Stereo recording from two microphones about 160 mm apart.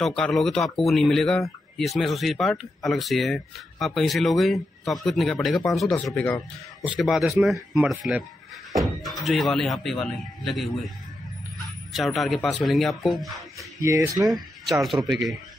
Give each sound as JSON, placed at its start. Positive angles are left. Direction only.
{"t": 0.0, "sound": "speech", "side_deg": 5}
{"t": 13.6, "sound": "speech", "side_deg": -20}
{"t": 14.7, "sound": "speech", "side_deg": 0}